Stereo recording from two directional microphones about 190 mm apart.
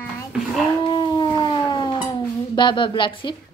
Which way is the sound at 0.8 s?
25° left (ahead or behind).